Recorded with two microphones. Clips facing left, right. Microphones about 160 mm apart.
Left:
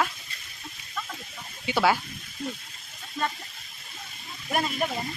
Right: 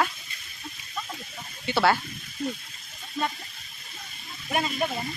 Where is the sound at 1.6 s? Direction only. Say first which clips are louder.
Right 1 dB; 10° left (ahead or behind).